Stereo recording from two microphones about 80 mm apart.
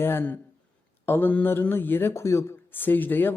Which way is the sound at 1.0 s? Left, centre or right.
Left.